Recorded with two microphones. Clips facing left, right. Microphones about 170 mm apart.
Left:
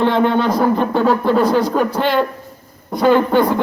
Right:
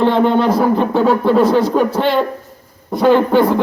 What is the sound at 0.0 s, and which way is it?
Speech, centre (ahead or behind).